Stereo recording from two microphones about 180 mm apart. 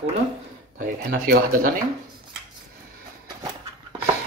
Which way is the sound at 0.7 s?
50° right (ahead or behind).